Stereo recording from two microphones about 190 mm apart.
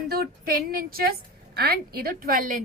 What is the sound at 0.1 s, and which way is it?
A woman's voice, 50° right (ahead or behind).